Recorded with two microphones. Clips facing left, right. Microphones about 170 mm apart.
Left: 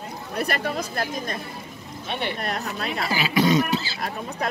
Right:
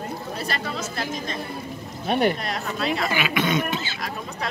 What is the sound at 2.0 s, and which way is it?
Speech, 45° right (ahead or behind).